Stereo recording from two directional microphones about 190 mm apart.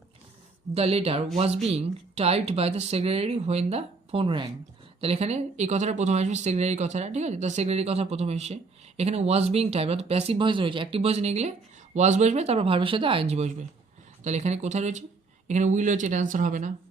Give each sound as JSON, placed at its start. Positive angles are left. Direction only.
{"t": 0.7, "sound": "speech", "side_deg": -30}